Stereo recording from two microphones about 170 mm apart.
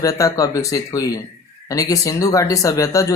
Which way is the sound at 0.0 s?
20° left (ahead or behind).